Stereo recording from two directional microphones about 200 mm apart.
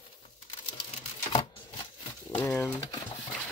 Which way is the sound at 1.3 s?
20° left (ahead or behind).